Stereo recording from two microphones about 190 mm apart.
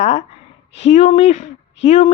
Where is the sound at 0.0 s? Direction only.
35° left (ahead or behind).